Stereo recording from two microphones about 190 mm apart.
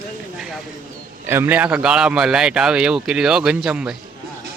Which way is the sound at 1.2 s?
10° right (ahead or behind).